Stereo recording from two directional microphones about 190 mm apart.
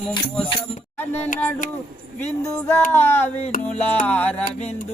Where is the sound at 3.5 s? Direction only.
40° left (ahead or behind).